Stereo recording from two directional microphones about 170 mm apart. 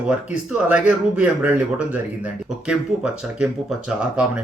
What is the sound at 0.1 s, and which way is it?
Speech, 5° right (ahead or behind).